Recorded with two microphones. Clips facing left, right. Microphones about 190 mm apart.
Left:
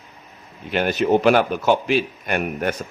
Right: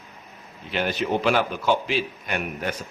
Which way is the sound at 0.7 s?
50° left (ahead or behind).